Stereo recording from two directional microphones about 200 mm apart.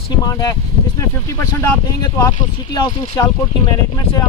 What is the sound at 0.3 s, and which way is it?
Speech, 20° left (ahead or behind).